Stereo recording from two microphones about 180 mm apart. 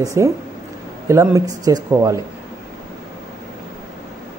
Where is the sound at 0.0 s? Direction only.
15° right (ahead or behind).